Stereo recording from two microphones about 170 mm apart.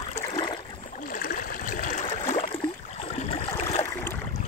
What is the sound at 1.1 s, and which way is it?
Stream, 55° left (ahead or behind).